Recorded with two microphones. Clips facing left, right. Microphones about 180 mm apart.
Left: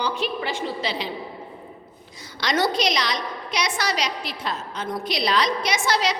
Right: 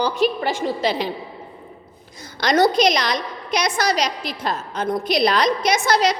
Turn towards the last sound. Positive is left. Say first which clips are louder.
# right 5 dB
turn(degrees=-45)  # may be behind; listen again after turning